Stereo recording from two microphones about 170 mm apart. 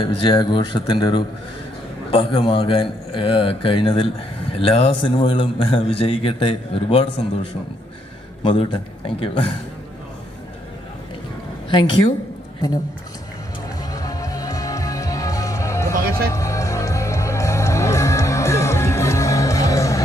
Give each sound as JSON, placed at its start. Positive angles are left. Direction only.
{"t": 0.0, "sound": "a man's voice", "side_deg": 25}
{"t": 8.4, "sound": "a man's voice", "side_deg": 30}
{"t": 13.9, "sound": "music", "side_deg": 20}